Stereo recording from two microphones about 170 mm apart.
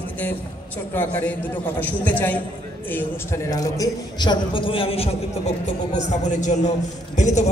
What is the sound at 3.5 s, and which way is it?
A man's voice, 20° left (ahead or behind).